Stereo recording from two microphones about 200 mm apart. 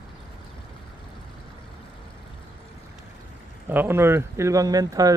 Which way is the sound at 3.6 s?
10° right (ahead or behind).